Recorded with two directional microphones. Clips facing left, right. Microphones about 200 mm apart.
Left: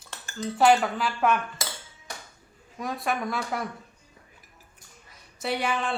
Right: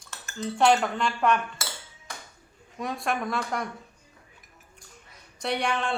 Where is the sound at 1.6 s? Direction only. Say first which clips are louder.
Left 2 dB; 20° left (ahead or behind).